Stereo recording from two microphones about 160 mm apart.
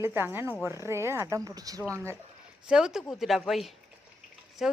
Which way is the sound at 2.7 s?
5° right (ahead or behind).